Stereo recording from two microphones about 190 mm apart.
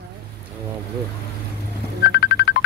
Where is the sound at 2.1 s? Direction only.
65° left (ahead or behind).